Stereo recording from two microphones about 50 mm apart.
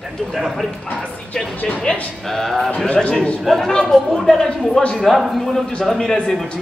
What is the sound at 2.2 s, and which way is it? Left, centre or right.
Speech, centre.